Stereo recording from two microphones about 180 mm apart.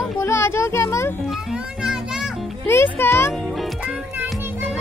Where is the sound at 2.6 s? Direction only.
15° left (ahead or behind).